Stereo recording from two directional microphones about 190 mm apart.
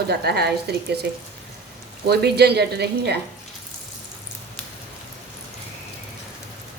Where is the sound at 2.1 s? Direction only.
60° right (ahead or behind).